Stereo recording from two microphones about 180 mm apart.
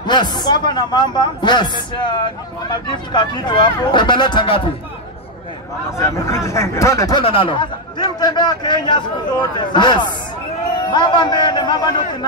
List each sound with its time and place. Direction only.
0.0 s speech: 25° left (ahead or behind)
5.9 s speech: 15° left (ahead or behind)